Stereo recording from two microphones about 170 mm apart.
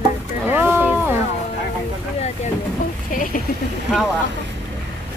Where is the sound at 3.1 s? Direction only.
50° left (ahead or behind).